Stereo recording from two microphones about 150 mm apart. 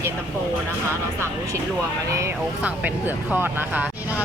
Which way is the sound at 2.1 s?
15° right (ahead or behind).